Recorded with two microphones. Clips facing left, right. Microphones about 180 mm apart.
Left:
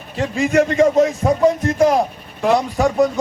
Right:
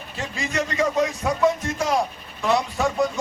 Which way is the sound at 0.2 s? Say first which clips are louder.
Left 11 dB; 60° left (ahead or behind).